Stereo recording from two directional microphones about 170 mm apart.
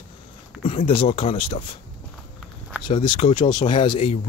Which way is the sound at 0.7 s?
35° left (ahead or behind).